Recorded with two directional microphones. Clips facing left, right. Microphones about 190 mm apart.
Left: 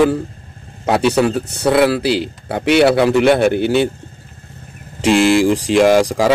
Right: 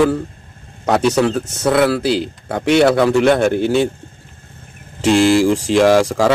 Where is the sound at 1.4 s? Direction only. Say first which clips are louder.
Even; 35° left (ahead or behind).